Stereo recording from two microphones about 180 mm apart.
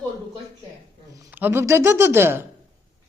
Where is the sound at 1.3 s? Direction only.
10° right (ahead or behind).